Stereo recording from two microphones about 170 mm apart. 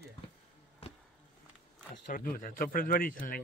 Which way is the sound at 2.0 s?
55° left (ahead or behind).